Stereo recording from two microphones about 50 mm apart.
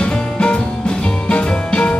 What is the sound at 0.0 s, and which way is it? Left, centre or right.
Music, centre.